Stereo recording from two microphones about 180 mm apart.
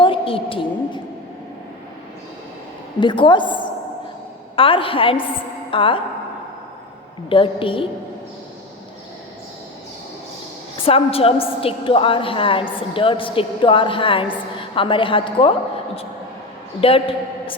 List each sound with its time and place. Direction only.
0.0 s a woman's voice: 30° left (ahead or behind)
3.0 s a woman's voice: 25° left (ahead or behind)
7.3 s a woman's voice: 30° left (ahead or behind)
10.8 s a woman's voice: 30° left (ahead or behind)
16.8 s a man's voice: 30° left (ahead or behind)